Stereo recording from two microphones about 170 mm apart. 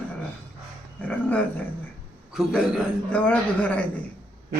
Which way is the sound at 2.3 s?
Centre (ahead or behind).